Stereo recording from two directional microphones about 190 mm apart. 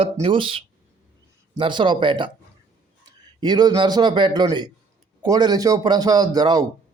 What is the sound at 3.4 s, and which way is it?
Speech, 20° right (ahead or behind).